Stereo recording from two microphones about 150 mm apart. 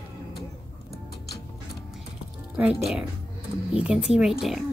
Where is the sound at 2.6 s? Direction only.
5° right (ahead or behind).